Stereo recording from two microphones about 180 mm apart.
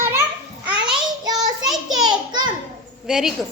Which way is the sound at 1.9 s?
25° right (ahead or behind).